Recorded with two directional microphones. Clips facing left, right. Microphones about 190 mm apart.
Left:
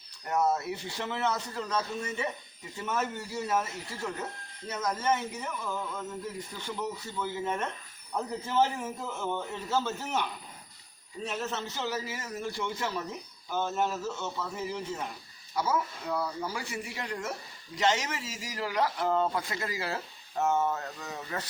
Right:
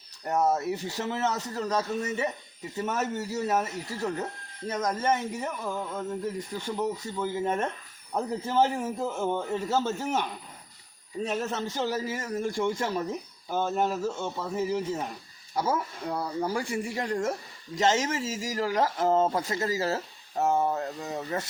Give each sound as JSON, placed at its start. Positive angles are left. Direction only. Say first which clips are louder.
{"t": 0.3, "sound": "speech", "louder": "right 3 dB", "side_deg": -40}